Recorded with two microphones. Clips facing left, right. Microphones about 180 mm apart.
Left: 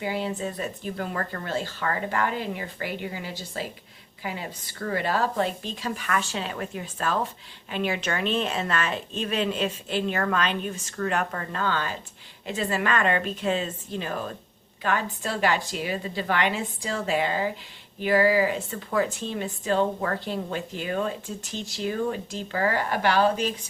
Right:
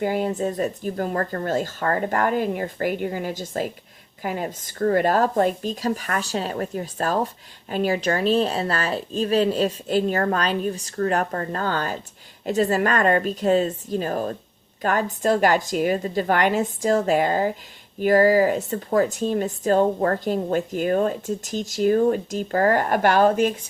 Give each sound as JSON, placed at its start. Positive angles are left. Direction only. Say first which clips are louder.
{"t": 0.0, "sound": "a woman's voice", "louder": "right 6 dB", "side_deg": -50}